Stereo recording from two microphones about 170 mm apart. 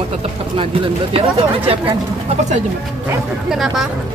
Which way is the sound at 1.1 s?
35° right (ahead or behind).